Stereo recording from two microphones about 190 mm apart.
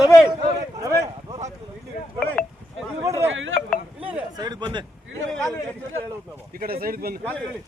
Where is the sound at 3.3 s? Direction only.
90° right.